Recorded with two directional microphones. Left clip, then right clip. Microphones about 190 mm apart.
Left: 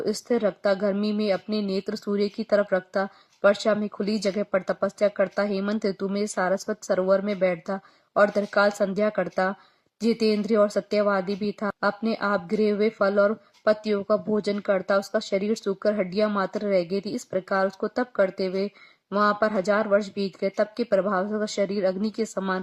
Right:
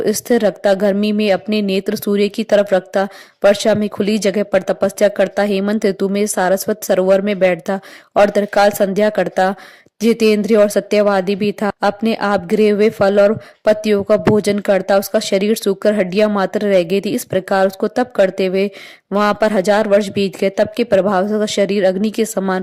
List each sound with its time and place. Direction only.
0.0 s speech: 40° right (ahead or behind)